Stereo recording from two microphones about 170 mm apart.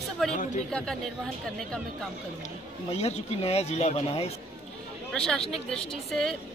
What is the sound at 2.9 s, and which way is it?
Speech, 40° left (ahead or behind).